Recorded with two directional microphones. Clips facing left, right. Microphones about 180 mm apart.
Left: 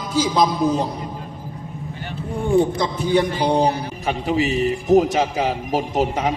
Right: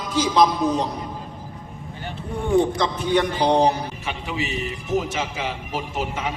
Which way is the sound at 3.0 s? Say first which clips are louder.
Left 3 dB; 10° left (ahead or behind).